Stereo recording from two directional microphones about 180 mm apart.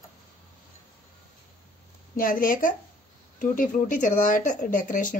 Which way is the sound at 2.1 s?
50° left (ahead or behind).